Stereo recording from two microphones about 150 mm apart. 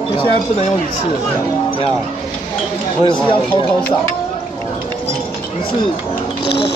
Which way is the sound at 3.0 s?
35° left (ahead or behind).